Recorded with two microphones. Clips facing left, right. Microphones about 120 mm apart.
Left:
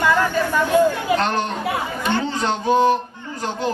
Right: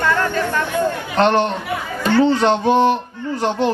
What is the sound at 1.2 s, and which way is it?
Speech, 40° left (ahead or behind).